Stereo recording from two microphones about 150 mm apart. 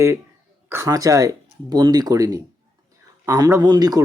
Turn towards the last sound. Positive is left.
turn(degrees=-25)  # may be behind; listen again after turning